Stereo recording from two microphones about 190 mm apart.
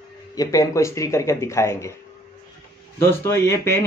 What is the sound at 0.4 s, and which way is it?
Speech, 15° left (ahead or behind).